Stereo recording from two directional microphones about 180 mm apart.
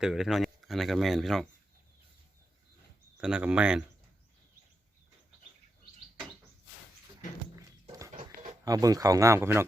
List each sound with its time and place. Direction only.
0.0 s speech: 5° right (ahead or behind)
3.2 s speech: 5° right (ahead or behind)
8.1 s a sound: 45° right (ahead or behind)
8.6 s speech: 20° right (ahead or behind)